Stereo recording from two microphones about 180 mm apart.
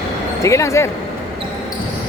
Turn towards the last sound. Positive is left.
turn(degrees=15)  # may be behind; listen again after turning